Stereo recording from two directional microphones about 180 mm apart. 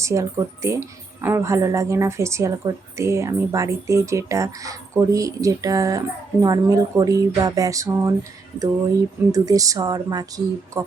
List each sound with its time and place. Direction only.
0.0 s a woman's voice: 15° right (ahead or behind)
9.3 s speech: 20° right (ahead or behind)